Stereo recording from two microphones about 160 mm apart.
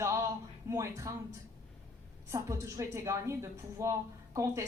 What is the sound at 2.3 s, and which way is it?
A woman's voice, 20° right (ahead or behind).